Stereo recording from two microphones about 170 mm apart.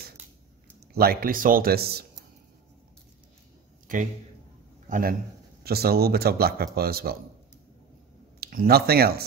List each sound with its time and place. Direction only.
0.9 s speech: 65° right (ahead or behind)
3.8 s a man's voice: 50° right (ahead or behind)
5.6 s speech: 65° right (ahead or behind)
8.4 s speech: 60° right (ahead or behind)